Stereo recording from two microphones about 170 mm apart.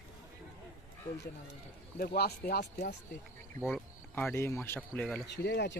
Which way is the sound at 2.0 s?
65° left (ahead or behind).